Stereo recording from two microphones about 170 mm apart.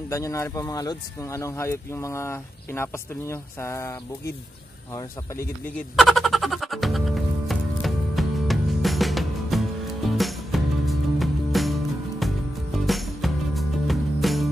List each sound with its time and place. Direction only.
0.1 s speech: 20° left (ahead or behind)
4.9 s speech: 15° left (ahead or behind)
5.9 s music: centre (ahead or behind)